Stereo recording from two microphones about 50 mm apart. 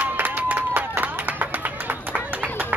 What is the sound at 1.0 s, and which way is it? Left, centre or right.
Clapping, right.